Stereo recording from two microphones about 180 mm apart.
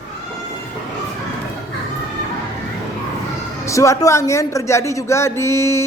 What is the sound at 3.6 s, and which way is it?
Speech, 15° left (ahead or behind).